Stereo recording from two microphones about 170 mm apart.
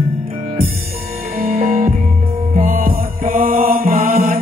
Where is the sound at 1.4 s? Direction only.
55° right (ahead or behind).